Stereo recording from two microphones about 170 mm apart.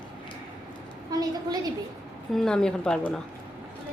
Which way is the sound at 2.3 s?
5° left (ahead or behind).